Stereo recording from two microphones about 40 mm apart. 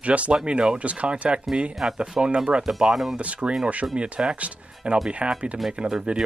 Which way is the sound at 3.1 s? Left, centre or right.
Right.